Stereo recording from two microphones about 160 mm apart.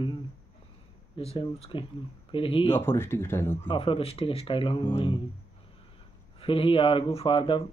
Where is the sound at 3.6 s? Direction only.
35° left (ahead or behind).